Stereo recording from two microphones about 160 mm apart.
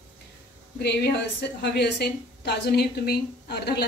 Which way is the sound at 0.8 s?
90° left.